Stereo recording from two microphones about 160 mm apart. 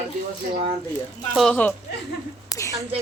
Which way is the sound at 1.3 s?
5° left (ahead or behind).